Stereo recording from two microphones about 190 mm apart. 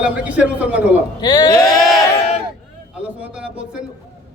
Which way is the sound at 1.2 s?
20° left (ahead or behind).